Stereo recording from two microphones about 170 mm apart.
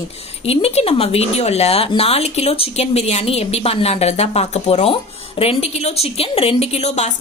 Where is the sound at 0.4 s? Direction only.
35° left (ahead or behind).